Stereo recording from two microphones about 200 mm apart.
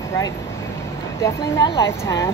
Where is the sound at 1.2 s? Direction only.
20° left (ahead or behind).